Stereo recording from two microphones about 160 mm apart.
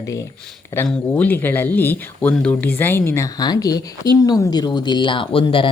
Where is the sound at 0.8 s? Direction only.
5° left (ahead or behind); by 5.7 s 35° left (ahead or behind).